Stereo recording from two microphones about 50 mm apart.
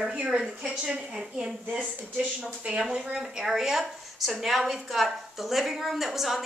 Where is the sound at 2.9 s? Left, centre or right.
Centre.